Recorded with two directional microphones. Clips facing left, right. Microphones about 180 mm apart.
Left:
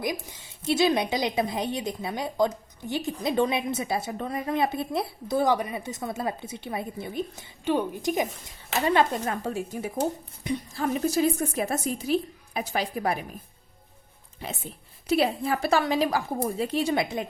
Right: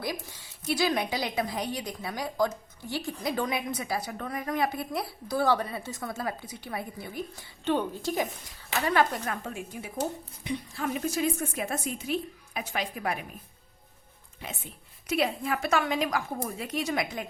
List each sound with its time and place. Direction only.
0.0 s a woman's voice: 20° left (ahead or behind)
7.6 s a woman's voice: 10° left (ahead or behind); by 13.2 s 35° left (ahead or behind)
14.4 s a woman's voice: 35° left (ahead or behind)